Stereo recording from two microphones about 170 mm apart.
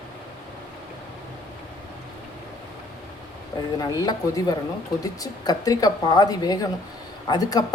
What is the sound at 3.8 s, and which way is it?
Speech, 20° left (ahead or behind).